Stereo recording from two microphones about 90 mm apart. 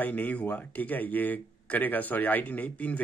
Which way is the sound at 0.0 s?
20° left (ahead or behind).